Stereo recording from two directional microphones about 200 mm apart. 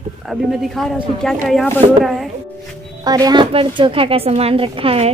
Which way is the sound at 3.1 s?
20° right (ahead or behind).